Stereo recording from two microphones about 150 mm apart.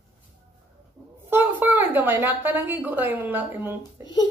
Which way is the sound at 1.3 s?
15° right (ahead or behind).